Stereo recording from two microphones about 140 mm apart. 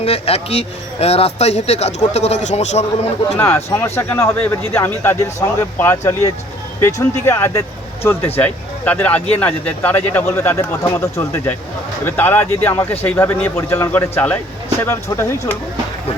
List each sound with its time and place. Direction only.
0.0 s speech: 45° left (ahead or behind)
3.3 s speech: 20° left (ahead or behind)